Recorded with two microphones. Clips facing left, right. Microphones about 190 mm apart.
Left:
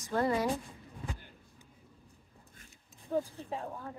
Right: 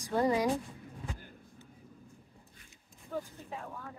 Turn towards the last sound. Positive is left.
turn(degrees=30)  # may be behind; listen again after turning